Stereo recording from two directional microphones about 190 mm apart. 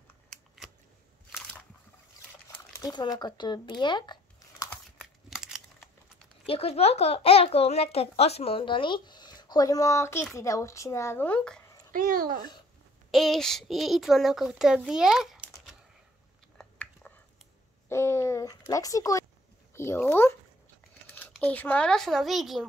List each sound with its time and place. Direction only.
0.3 s scissors: centre (ahead or behind)
2.4 s a sound: 15° left (ahead or behind)
4.6 s crumpling: 5° right (ahead or behind)
6.4 s a child's voice: 30° left (ahead or behind); by 11.7 s 5° left (ahead or behind)
11.9 s speech: 50° right (ahead or behind)
13.1 s a child's voice: centre (ahead or behind)
16.5 s chewing: 5° left (ahead or behind)
17.8 s speech: 15° left (ahead or behind)
21.4 s a child's voice: 10° left (ahead or behind)